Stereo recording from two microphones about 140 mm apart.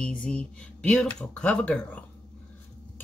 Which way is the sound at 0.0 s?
10° left (ahead or behind).